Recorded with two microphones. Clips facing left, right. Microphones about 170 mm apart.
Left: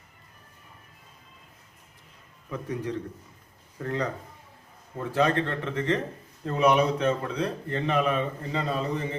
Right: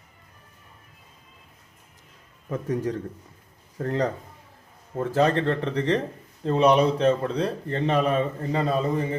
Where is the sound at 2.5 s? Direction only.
45° right (ahead or behind).